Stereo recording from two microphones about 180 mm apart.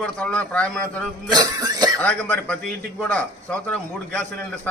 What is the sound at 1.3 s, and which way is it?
Speech, 25° right (ahead or behind).